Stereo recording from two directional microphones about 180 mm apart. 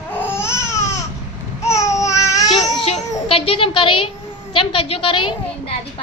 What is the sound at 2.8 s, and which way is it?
Music, 30° left (ahead or behind).